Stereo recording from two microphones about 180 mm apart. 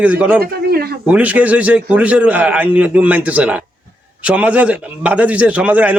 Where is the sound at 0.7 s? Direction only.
60° right (ahead or behind).